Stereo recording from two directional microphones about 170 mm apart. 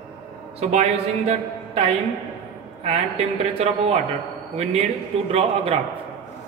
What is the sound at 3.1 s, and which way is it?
Speech, 40° right (ahead or behind).